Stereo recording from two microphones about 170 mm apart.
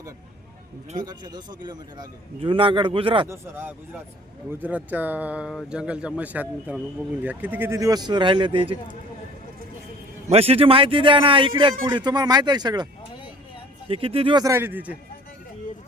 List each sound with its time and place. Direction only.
0.9 s a man's voice: 25° right (ahead or behind)
4.6 s a man's voice: 10° right (ahead or behind); by 8.7 s 30° right (ahead or behind)
10.2 s a man's voice: 35° right (ahead or behind); by 14.9 s 10° right (ahead or behind)